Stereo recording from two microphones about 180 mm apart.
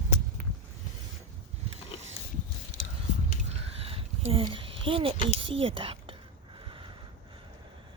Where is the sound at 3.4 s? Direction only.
30° right (ahead or behind).